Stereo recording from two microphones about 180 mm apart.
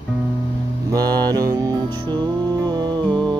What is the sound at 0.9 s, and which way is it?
Music, 20° right (ahead or behind).